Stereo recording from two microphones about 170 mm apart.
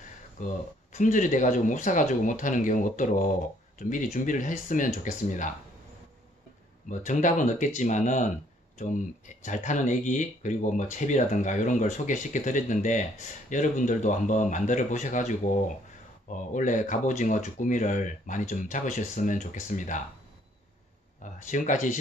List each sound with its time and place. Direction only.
0.4 s speech: 45° left (ahead or behind)
6.9 s speech: 45° left (ahead or behind)
21.2 s speech: 45° left (ahead or behind)